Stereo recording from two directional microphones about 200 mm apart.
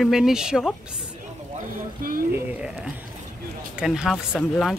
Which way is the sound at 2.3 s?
5° right (ahead or behind).